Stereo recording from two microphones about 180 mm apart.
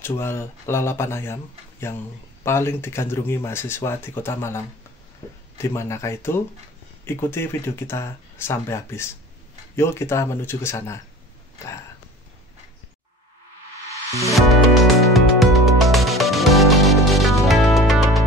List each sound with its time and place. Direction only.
0.0 s speech: 15° left (ahead or behind)
5.6 s speech: 15° left (ahead or behind)
13.8 s music: 15° right (ahead or behind)
14.3 s music: centre (ahead or behind)